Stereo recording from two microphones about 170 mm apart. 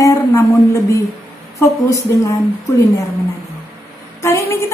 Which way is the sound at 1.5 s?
15° left (ahead or behind).